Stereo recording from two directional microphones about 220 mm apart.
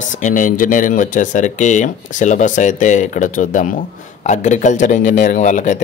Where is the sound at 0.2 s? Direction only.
35° left (ahead or behind).